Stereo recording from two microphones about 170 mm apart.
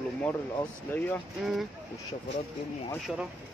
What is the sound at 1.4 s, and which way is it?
Speech, centre (ahead or behind).